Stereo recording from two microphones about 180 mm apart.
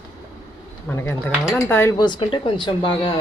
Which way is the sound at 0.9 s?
10° left (ahead or behind).